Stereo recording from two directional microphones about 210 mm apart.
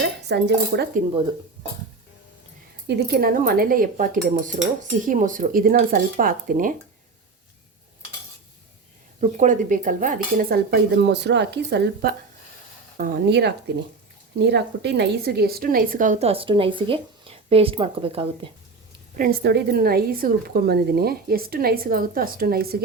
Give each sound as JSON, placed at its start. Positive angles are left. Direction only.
{"t": 0.2, "sound": "a woman's voice", "side_deg": -55}
{"t": 2.8, "sound": "a woman's voice", "side_deg": -50}
{"t": 9.2, "sound": "a woman's voice", "side_deg": -35}
{"t": 19.1, "sound": "a woman's voice", "side_deg": -45}